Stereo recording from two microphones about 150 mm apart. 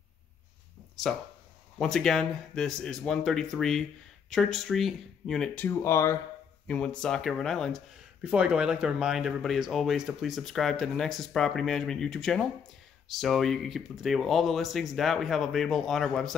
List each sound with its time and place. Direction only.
1.8 s speech: 5° left (ahead or behind)
5.6 s speech: 15° left (ahead or behind)
7.0 s speech: 5° left (ahead or behind)